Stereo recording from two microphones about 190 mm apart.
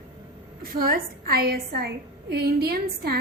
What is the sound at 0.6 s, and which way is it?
A woman's voice, 50° right (ahead or behind).